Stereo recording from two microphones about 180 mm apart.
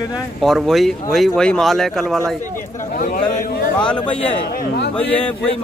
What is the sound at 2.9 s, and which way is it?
Speech, 50° left (ahead or behind).